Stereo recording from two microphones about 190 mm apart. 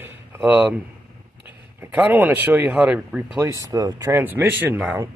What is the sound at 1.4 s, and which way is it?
Speech, 10° right (ahead or behind).